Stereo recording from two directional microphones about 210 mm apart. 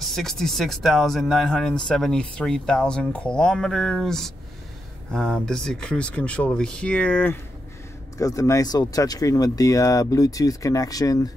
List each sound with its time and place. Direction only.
0.0 s speech: centre (ahead or behind)